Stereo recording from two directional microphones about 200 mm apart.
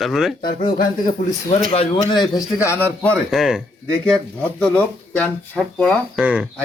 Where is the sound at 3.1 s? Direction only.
Centre (ahead or behind).